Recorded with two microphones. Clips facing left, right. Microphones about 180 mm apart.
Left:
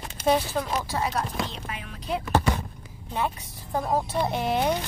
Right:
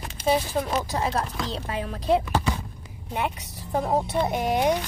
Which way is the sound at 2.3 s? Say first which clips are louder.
Left 2 dB; 55° left (ahead or behind).